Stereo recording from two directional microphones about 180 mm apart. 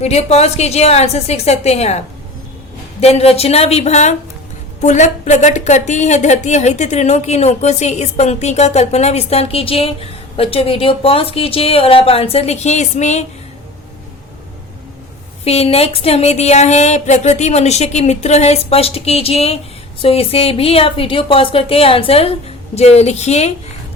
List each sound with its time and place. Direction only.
0.0 s speech: 35° left (ahead or behind)
15.4 s speech: 35° left (ahead or behind)